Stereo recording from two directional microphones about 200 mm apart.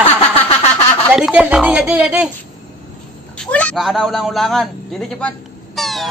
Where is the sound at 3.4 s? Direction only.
5° left (ahead or behind).